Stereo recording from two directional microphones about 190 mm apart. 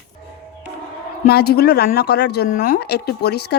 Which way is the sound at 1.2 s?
55° left (ahead or behind).